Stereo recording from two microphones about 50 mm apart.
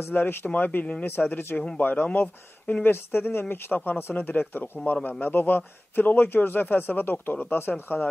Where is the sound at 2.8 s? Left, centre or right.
Left.